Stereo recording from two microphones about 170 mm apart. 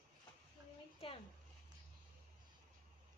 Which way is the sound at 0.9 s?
30° left (ahead or behind).